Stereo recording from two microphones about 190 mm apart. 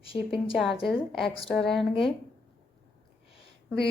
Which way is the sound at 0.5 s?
Centre (ahead or behind).